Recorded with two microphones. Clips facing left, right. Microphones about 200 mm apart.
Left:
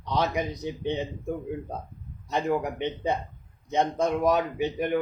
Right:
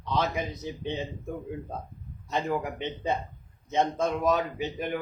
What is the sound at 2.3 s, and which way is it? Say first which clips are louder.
Speech: left 3 dB; 15° left (ahead or behind).